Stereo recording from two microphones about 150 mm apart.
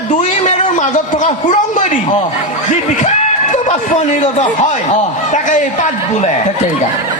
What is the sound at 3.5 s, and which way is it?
A man's voice, 50° left (ahead or behind).